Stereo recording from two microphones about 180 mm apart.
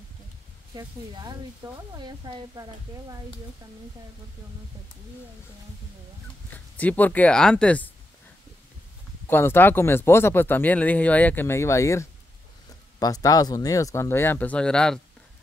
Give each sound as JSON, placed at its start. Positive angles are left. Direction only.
{"t": 0.7, "sound": "speech", "side_deg": -20}
{"t": 6.5, "sound": "speech", "side_deg": 10}
{"t": 9.3, "sound": "speech", "side_deg": 10}